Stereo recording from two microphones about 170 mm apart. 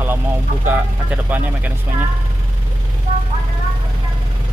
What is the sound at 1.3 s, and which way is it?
Speech, 10° right (ahead or behind).